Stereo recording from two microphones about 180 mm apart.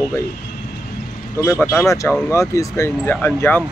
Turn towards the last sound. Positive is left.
turn(degrees=10)  # may be behind; listen again after turning